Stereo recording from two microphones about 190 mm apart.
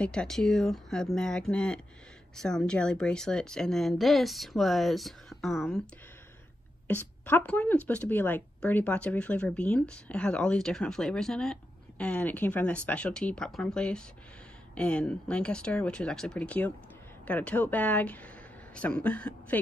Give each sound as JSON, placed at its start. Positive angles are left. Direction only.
{"t": 0.0, "sound": "a woman's voice", "side_deg": 5}
{"t": 6.9, "sound": "a woman's voice", "side_deg": 10}